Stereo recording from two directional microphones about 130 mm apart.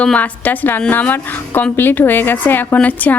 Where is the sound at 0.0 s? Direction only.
10° left (ahead or behind).